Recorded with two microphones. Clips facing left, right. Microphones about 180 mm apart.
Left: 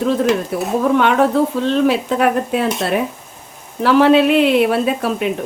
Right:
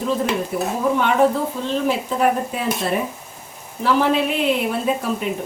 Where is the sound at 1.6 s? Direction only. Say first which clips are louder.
Left 6 dB; 75° left (ahead or behind).